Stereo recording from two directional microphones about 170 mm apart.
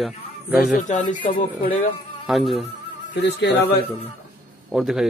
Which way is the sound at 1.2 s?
50° left (ahead or behind).